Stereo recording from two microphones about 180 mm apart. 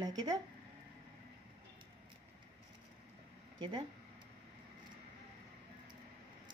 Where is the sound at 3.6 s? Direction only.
25° right (ahead or behind).